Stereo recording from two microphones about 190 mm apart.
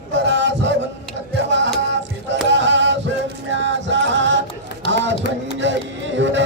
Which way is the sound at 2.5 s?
70° right (ahead or behind).